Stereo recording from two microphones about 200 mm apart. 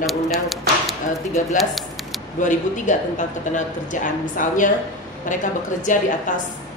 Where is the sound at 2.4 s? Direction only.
40° left (ahead or behind).